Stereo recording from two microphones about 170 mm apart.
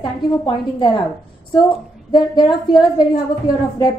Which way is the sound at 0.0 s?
25° left (ahead or behind).